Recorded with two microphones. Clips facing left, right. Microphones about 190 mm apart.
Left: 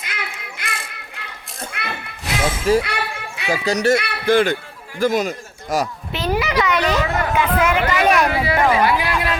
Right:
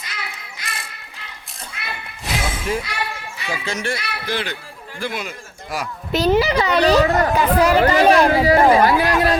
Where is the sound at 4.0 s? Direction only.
50° left (ahead or behind).